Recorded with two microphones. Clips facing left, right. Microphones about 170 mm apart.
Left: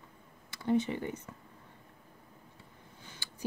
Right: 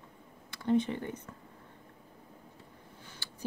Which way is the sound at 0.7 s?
10° left (ahead or behind).